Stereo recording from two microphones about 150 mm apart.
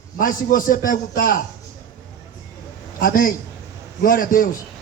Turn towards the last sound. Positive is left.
turn(degrees=65)  # may be behind; listen again after turning